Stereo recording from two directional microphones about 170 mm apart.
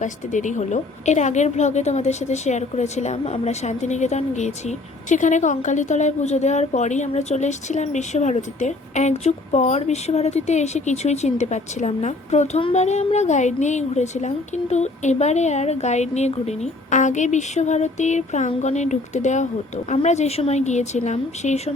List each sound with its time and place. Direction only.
0.0 s a woman's voice: 45° left (ahead or behind)